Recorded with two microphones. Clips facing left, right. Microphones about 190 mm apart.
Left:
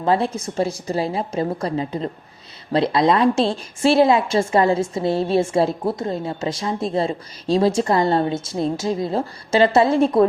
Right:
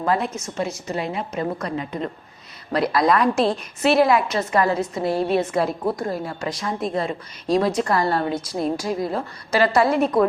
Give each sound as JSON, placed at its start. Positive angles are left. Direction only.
{"t": 0.0, "sound": "a woman's voice", "side_deg": 30}